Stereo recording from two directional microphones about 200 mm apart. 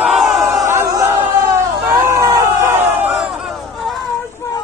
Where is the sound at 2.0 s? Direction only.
15° right (ahead or behind).